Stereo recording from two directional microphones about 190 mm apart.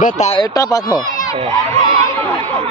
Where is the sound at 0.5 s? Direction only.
20° left (ahead or behind).